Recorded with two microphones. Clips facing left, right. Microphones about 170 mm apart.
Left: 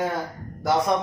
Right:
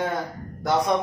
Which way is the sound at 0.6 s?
Centre (ahead or behind).